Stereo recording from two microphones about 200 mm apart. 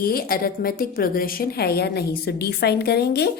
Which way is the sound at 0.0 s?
50° left (ahead or behind).